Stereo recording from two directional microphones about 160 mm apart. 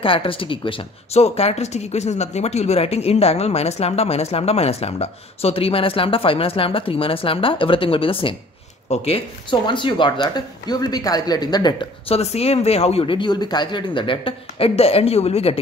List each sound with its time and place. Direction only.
0.0 s speech: 35° left (ahead or behind)
12.2 s speech: 40° left (ahead or behind)